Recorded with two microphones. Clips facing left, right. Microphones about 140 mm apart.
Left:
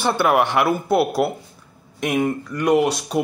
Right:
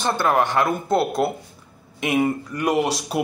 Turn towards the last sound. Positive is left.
turn(degrees=0)  # may be behind; listen again after turning